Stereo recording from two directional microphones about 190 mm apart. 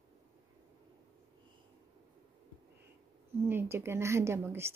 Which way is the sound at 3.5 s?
10° right (ahead or behind).